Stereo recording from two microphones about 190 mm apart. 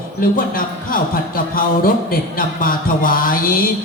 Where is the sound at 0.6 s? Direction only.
45° left (ahead or behind).